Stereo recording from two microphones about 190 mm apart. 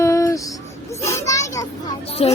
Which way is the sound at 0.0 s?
15° left (ahead or behind).